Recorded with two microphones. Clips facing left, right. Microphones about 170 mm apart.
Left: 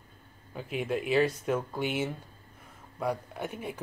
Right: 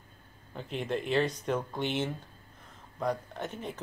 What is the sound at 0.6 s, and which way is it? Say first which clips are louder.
Speech: left 2 dB; 5° left (ahead or behind).